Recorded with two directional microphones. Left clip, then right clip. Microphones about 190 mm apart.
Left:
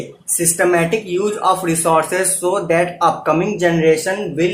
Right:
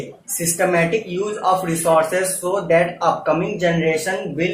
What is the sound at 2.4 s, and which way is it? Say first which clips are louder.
Speech: left 1 dB; 45° left (ahead or behind).